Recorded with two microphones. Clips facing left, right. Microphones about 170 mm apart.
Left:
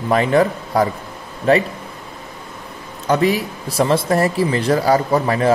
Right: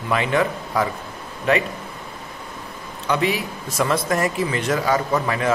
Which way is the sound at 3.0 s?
40° left (ahead or behind).